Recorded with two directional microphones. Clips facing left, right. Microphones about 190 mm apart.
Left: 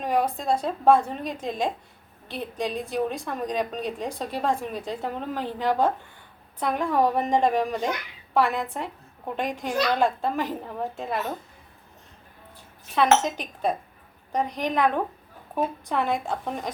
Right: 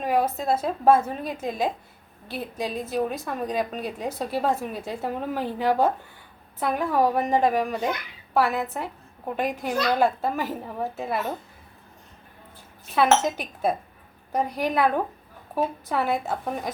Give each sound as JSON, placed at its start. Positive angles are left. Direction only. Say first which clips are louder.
{"t": 0.0, "sound": "a woman's voice", "louder": "right 1 dB", "side_deg": -5}
{"t": 12.9, "sound": "a woman's voice", "louder": "even", "side_deg": -5}